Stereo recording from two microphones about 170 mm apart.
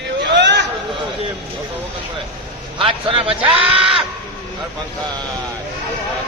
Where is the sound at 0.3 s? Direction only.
90° right.